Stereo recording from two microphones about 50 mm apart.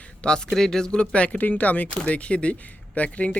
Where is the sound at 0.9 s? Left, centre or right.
Left.